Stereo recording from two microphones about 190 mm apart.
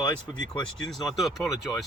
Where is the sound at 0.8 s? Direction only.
Centre (ahead or behind).